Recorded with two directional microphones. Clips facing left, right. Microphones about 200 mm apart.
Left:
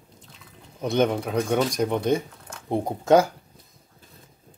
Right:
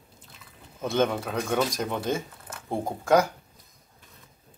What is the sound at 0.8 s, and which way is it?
Speech, 15° left (ahead or behind).